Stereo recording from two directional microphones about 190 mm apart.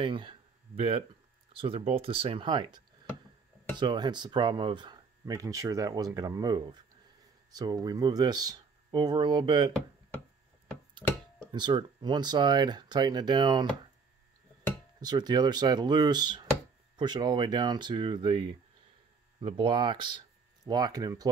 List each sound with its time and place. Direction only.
0.0 s speech: 25° right (ahead or behind)
11.0 s speech: 5° left (ahead or behind)
11.5 s speech: 25° right (ahead or behind)
15.0 s speech: 20° right (ahead or behind)